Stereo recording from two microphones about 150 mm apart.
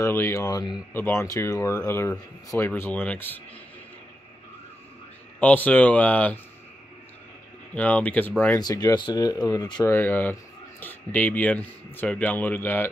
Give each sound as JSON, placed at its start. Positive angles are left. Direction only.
{"t": 0.0, "sound": "speech", "side_deg": 15}
{"t": 5.4, "sound": "speech", "side_deg": 10}
{"t": 7.7, "sound": "speech", "side_deg": 10}
{"t": 8.8, "sound": "speech", "side_deg": 25}
{"t": 9.8, "sound": "speech", "side_deg": 15}